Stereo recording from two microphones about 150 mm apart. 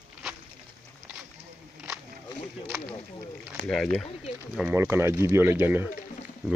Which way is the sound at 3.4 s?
5° left (ahead or behind).